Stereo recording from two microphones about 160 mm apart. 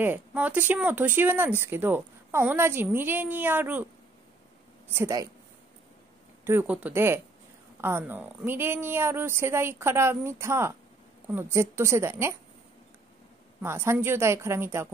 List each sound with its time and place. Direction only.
0.0 s speech: 10° right (ahead or behind)
4.8 s speech: 15° right (ahead or behind)
6.4 s speech: 10° right (ahead or behind)
13.6 s speech: 15° right (ahead or behind)